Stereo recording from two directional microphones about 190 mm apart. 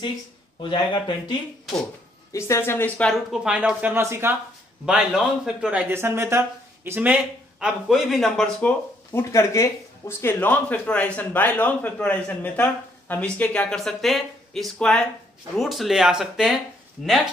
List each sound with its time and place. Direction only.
0.6 s speech: 25° left (ahead or behind); by 17.3 s centre (ahead or behind)